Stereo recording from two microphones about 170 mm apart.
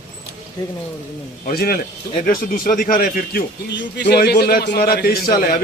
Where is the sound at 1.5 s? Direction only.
60° left (ahead or behind).